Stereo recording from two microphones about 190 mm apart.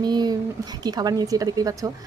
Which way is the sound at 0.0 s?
20° right (ahead or behind).